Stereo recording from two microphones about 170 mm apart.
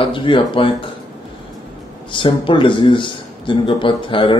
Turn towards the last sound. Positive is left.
turn(degrees=30)  # may be behind; listen again after turning